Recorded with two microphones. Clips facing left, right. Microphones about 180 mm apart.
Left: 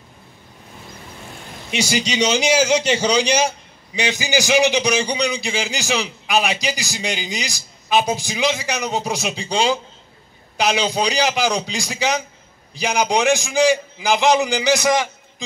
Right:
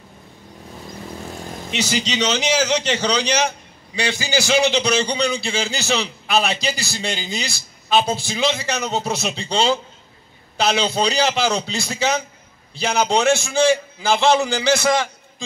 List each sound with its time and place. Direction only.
1.7 s a man's voice: 10° left (ahead or behind)